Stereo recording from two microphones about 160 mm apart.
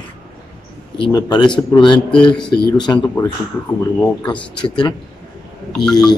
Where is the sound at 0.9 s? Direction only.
30° left (ahead or behind).